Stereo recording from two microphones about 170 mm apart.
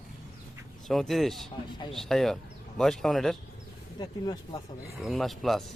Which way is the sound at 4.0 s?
25° left (ahead or behind).